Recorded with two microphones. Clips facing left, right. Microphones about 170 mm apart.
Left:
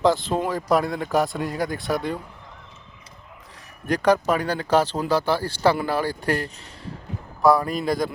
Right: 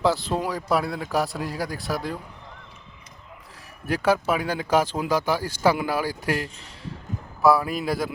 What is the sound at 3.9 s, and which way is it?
Speech, 5° right (ahead or behind).